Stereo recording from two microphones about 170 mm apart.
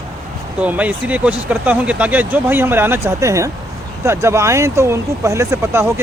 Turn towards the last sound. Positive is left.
turn(degrees=-15)  # may be behind; listen again after turning